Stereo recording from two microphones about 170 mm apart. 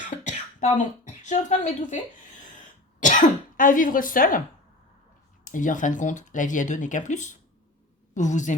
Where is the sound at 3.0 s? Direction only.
50° left (ahead or behind).